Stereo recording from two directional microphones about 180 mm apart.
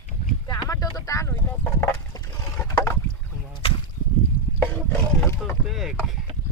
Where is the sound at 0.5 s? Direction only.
20° left (ahead or behind).